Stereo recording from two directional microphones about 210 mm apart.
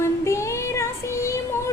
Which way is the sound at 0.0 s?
15° left (ahead or behind).